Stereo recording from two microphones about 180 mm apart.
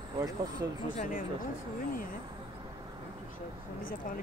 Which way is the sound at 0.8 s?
50° left (ahead or behind).